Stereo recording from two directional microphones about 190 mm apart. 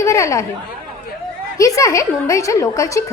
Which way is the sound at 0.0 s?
15° left (ahead or behind).